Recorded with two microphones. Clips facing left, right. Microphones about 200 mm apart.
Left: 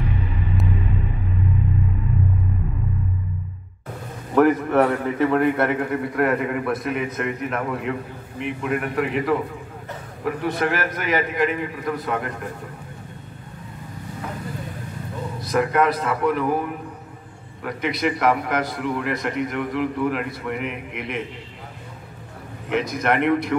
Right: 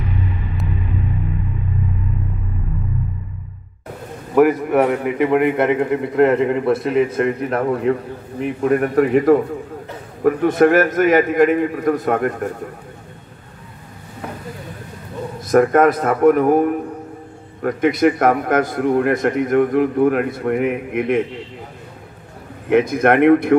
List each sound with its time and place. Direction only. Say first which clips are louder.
4.4 s a man's voice: right 3 dB; 10° right (ahead or behind); by 12.4 s 50° right (ahead or behind)
15.4 s a man's voice: right 7 dB; 50° right (ahead or behind)
22.7 s a man's voice: right 8 dB; 55° right (ahead or behind)